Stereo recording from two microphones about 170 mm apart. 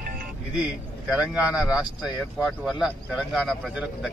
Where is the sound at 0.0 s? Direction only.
60° right (ahead or behind).